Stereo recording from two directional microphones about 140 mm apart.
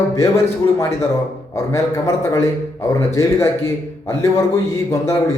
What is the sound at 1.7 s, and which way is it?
Speech, 20° left (ahead or behind).